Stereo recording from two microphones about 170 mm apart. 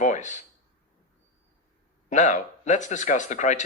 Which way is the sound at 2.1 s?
45° left (ahead or behind).